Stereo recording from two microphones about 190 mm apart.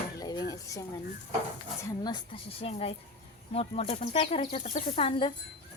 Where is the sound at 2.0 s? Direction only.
25° left (ahead or behind).